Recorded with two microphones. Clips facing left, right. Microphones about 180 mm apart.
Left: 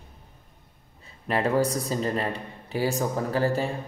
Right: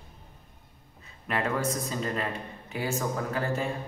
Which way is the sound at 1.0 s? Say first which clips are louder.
Left 4 dB; 30° left (ahead or behind).